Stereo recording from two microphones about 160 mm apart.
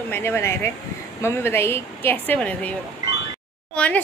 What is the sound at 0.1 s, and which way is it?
Speech, 15° left (ahead or behind).